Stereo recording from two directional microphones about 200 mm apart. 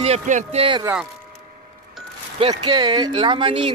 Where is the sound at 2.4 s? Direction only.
25° right (ahead or behind).